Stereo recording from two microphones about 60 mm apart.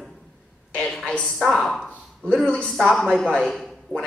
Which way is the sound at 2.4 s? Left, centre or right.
Centre.